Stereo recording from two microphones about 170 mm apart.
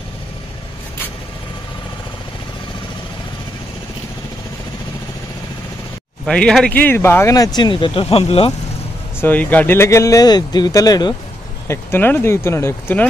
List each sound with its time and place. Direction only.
6.2 s speech: 5° left (ahead or behind); by 8.5 s 35° left (ahead or behind)
9.2 s speech: 10° left (ahead or behind)